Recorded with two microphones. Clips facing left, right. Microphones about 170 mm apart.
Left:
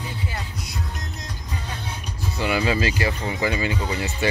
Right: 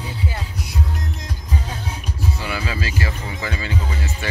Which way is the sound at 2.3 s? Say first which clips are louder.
Left 5 dB; 20° left (ahead or behind).